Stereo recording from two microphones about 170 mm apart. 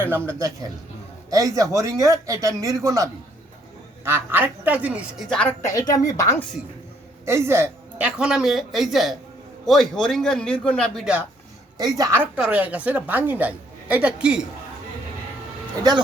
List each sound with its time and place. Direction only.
0.0 s a woman's voice: 15° right (ahead or behind)
5.3 s a woman's voice: 10° left (ahead or behind)
7.3 s speech: 15° right (ahead or behind)
11.8 s speech: 20° right (ahead or behind)
12.2 s a woman's voice: 5° right (ahead or behind)